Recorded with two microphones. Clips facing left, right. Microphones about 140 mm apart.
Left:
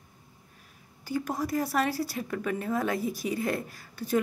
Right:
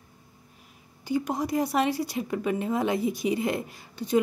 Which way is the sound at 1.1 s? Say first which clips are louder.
Right 3 dB; 20° right (ahead or behind).